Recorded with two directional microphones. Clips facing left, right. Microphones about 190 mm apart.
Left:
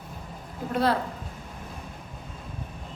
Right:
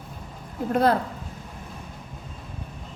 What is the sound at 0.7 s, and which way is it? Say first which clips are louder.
Speech: right 4 dB; 45° right (ahead or behind).